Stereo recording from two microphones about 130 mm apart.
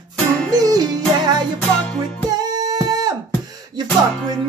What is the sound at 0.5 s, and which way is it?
Music, 30° right (ahead or behind).